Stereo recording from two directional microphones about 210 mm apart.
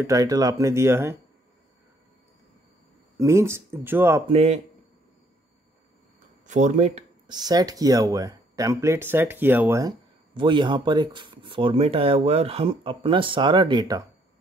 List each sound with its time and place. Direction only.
0.0 s speech: 15° right (ahead or behind)
3.2 s speech: 15° right (ahead or behind)
4.3 s speech: 30° right (ahead or behind)
6.4 s speech: 35° right (ahead or behind)
7.2 s speech: 20° right (ahead or behind)